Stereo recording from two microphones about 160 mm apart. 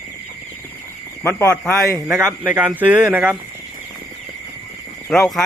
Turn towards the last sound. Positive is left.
turn(degrees=0)  # may be behind; listen again after turning